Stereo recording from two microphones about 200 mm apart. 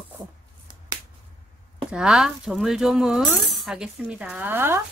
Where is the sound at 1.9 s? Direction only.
5° right (ahead or behind).